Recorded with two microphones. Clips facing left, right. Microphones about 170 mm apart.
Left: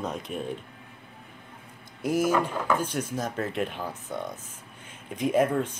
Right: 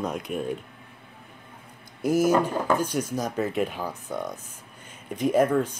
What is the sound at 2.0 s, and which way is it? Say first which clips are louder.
Speech: right 3 dB; 40° right (ahead or behind).